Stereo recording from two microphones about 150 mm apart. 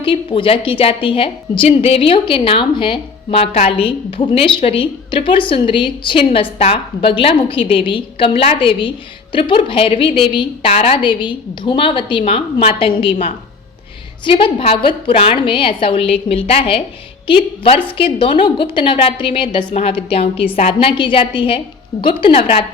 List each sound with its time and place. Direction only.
0.0 s a woman's voice: 35° left (ahead or behind)